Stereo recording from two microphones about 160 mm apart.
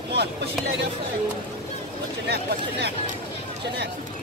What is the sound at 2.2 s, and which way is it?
Speech, 90° right.